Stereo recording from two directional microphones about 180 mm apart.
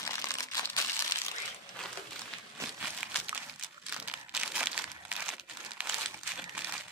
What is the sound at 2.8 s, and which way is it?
Crumpling, centre (ahead or behind).